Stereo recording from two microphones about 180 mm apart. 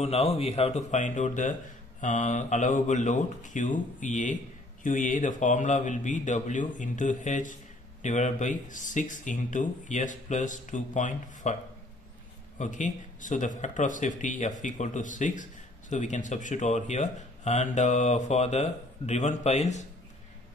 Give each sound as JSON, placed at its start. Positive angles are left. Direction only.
{"t": 0.0, "sound": "speech", "side_deg": 35}
{"t": 12.5, "sound": "speech", "side_deg": 45}